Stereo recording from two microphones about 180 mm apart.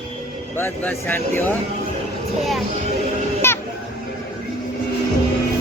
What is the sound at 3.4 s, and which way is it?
Music, 15° left (ahead or behind).